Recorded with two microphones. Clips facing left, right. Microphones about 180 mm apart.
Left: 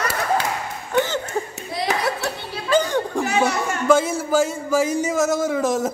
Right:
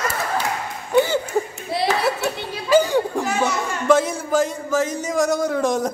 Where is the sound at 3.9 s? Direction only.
5° left (ahead or behind).